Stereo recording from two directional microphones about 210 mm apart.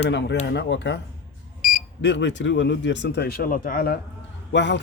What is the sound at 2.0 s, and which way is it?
Speech, 60° left (ahead or behind).